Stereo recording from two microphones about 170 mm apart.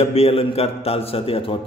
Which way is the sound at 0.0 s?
35° left (ahead or behind).